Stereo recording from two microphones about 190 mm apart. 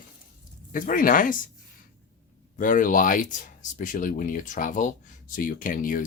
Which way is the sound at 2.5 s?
45° left (ahead or behind).